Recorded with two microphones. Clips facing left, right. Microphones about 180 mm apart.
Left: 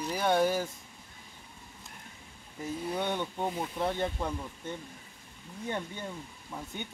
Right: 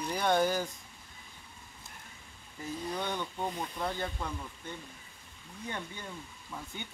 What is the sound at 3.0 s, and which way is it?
Speech, 20° left (ahead or behind).